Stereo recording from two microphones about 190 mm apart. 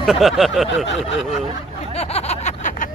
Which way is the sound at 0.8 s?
70° left (ahead or behind).